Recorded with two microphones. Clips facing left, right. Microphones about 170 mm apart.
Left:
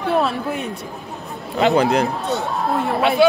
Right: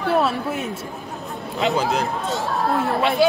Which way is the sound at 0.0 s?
Centre (ahead or behind).